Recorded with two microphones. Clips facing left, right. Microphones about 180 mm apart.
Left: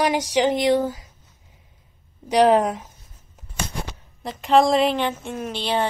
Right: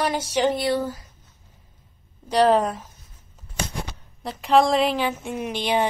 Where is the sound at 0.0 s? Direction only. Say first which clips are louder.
Left 2 dB; 15° left (ahead or behind).